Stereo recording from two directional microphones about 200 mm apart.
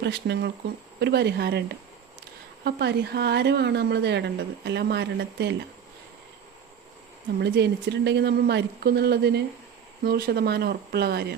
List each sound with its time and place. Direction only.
0.0 s a woman's voice: 60° right (ahead or behind)
2.6 s a woman's voice: 55° right (ahead or behind)
7.3 s a woman's voice: 60° right (ahead or behind)